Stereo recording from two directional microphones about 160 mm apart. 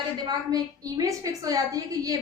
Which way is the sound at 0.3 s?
25° right (ahead or behind).